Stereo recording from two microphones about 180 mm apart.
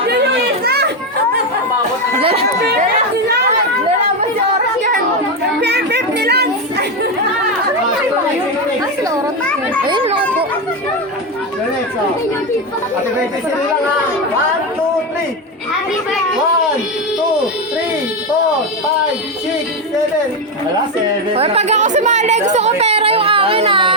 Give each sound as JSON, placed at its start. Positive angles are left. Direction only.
{"t": 0.6, "sound": "children playing", "side_deg": -65}
{"t": 5.5, "sound": "a sound", "side_deg": -70}
{"t": 9.8, "sound": "children playing", "side_deg": -30}
{"t": 21.3, "sound": "speech", "side_deg": -35}